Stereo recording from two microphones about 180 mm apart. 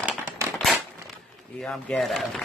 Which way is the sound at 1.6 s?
5° left (ahead or behind).